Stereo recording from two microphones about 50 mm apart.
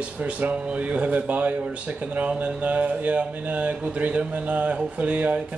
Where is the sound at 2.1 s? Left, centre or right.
Right.